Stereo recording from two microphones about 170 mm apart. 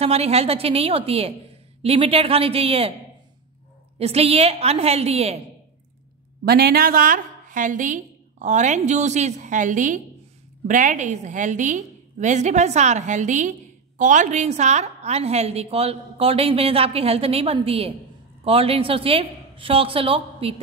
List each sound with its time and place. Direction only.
0.0 s a woman's voice: 35° right (ahead or behind)
4.0 s a woman's voice: 35° right (ahead or behind)
6.4 s a woman's voice: 65° right (ahead or behind); by 20.5 s 35° right (ahead or behind)